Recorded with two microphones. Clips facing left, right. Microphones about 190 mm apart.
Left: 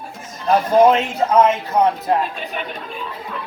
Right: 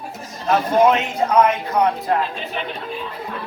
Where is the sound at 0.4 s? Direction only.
35° left (ahead or behind).